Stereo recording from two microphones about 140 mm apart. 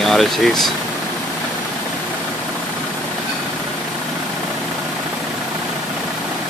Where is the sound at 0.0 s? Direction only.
Centre (ahead or behind).